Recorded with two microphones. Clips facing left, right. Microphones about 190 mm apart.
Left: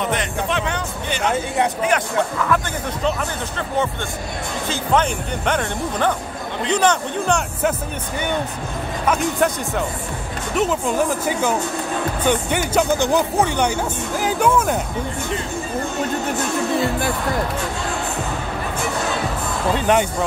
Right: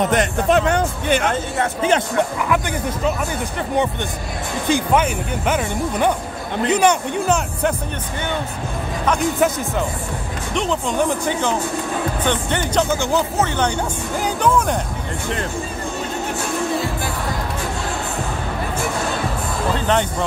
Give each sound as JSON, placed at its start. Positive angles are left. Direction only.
{"t": 0.1, "sound": "speech", "side_deg": -45}
{"t": 1.8, "sound": "a man's voice", "side_deg": -25}
{"t": 9.0, "sound": "a man's voice", "side_deg": 0}
{"t": 19.9, "sound": "speech", "side_deg": 10}